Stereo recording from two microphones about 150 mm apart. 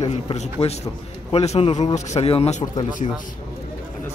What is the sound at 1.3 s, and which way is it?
Speech, 45° left (ahead or behind).